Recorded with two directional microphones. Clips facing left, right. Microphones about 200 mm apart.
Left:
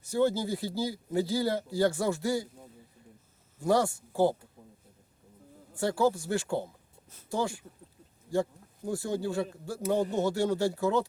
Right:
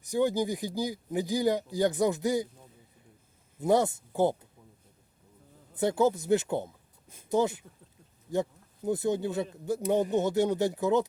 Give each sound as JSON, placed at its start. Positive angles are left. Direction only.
{"t": 0.0, "sound": "speech", "side_deg": -15}
{"t": 3.6, "sound": "speech", "side_deg": -20}
{"t": 5.7, "sound": "speech", "side_deg": -20}
{"t": 7.1, "sound": "a sound", "side_deg": -15}
{"t": 8.3, "sound": "speech", "side_deg": -20}